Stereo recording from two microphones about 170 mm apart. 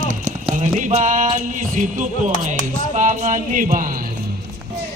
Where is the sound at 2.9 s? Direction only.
45° right (ahead or behind).